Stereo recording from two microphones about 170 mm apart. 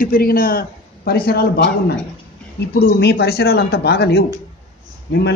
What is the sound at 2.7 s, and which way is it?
Speech, 65° left (ahead or behind).